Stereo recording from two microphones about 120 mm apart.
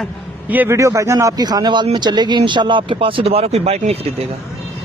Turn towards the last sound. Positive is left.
turn(degrees=-60)  # may be behind; listen again after turning